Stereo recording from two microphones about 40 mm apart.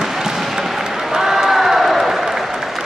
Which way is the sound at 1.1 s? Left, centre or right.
Centre.